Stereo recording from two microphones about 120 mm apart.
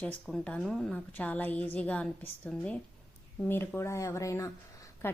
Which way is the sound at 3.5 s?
20° left (ahead or behind).